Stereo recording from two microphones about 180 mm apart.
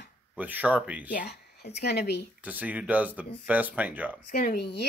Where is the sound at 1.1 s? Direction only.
65° left (ahead or behind).